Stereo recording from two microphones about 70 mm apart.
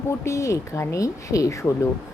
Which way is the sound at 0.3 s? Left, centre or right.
Left.